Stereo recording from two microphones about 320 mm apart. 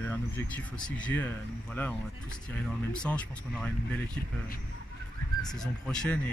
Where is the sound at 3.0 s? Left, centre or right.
Centre.